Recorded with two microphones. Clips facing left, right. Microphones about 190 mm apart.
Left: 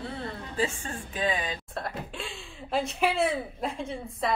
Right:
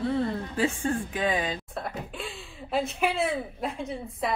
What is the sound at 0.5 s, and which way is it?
Speech, 60° right (ahead or behind).